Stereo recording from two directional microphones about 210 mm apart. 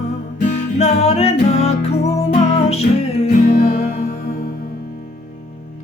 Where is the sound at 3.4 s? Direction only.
40° left (ahead or behind).